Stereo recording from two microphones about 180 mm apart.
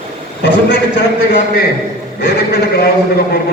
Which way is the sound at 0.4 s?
70° left (ahead or behind).